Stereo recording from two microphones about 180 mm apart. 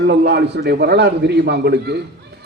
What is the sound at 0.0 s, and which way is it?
A man's voice, 70° right (ahead or behind).